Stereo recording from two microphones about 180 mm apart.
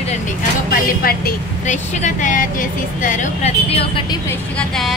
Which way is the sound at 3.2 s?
35° left (ahead or behind).